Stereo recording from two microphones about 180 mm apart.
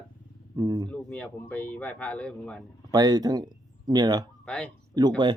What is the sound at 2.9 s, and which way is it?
Speech, 20° right (ahead or behind).